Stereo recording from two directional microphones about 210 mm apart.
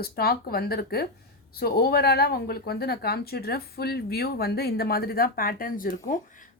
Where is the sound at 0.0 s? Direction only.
45° left (ahead or behind).